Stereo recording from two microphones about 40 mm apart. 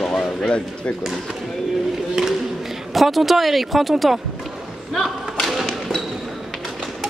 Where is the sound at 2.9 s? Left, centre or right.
Centre.